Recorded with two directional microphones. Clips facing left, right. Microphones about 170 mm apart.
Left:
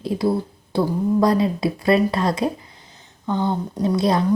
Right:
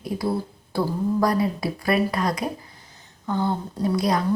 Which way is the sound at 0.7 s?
25° left (ahead or behind).